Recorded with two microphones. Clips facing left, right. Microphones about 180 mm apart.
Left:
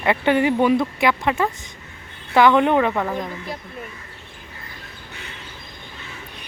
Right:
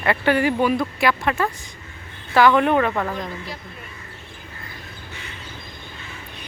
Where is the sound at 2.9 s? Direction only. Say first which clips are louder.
Left 1 dB; 5° left (ahead or behind).